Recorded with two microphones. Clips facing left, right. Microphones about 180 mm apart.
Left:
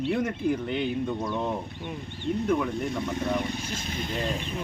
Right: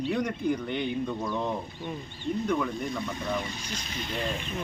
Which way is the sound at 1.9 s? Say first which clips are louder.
Left 2 dB; 65° left (ahead or behind).